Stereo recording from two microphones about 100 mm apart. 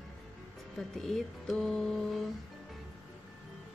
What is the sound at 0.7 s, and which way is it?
Speech, 5° left (ahead or behind).